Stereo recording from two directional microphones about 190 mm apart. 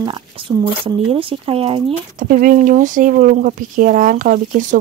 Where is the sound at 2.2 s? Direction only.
45° right (ahead or behind).